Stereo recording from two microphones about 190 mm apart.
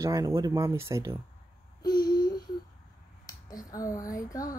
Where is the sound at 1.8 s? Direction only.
20° left (ahead or behind).